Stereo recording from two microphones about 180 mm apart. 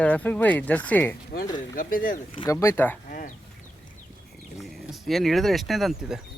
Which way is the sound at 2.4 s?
15° left (ahead or behind).